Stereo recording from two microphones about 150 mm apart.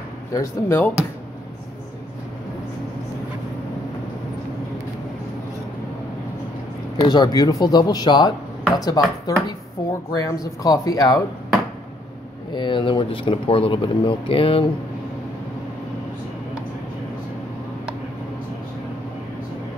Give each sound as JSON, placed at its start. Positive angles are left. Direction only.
{"t": 0.3, "sound": "speech", "side_deg": 20}
{"t": 7.0, "sound": "speech", "side_deg": 25}
{"t": 12.5, "sound": "speech", "side_deg": 35}